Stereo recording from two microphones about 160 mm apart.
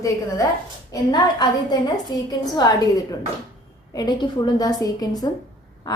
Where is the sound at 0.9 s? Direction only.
25° left (ahead or behind).